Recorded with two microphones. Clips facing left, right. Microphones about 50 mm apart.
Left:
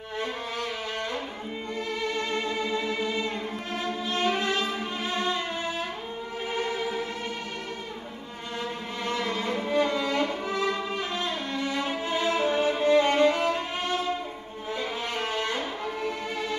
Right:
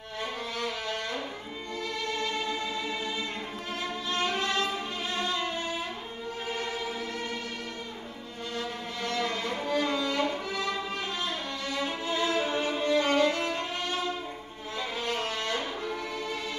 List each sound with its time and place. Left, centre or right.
2.1 s music: left
4.1 s violin: centre
6.5 s music: left
9.0 s violin: centre
11.2 s music: left
13.0 s violin: centre
14.8 s violin: centre